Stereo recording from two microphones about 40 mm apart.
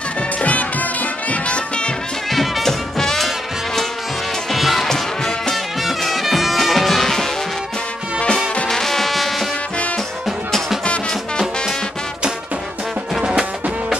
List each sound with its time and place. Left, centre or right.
0.4 s music: left
2.3 s music: centre
4.5 s music: centre
4.8 s music: centre
5.9 s music: centre
8.6 s music: centre